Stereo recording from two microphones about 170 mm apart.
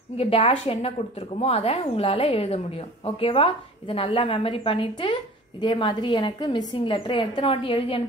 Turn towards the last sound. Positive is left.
turn(degrees=30)  # may be behind; listen again after turning